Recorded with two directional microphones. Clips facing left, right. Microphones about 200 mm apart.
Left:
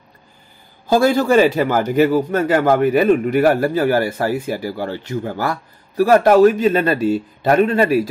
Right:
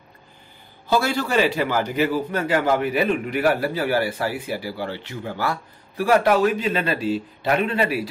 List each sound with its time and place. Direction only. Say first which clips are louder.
0.8 s a man's voice: left 8 dB; 45° left (ahead or behind)